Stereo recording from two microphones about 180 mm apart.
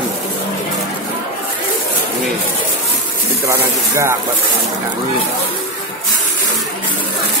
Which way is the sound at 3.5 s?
15° right (ahead or behind).